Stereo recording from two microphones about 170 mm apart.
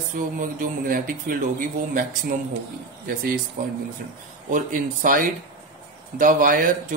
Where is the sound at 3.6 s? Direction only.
50° right (ahead or behind).